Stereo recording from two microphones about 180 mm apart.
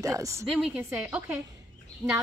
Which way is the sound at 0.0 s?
15° right (ahead or behind).